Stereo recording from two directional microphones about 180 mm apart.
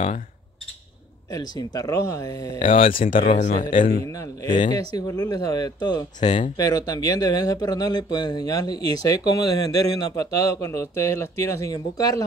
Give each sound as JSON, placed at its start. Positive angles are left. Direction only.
{"t": 1.3, "sound": "a man's voice", "side_deg": 20}
{"t": 2.9, "sound": "speech", "side_deg": 50}
{"t": 4.0, "sound": "a man's voice", "side_deg": 15}
{"t": 6.2, "sound": "speech", "side_deg": 40}
{"t": 6.5, "sound": "a man's voice", "side_deg": 20}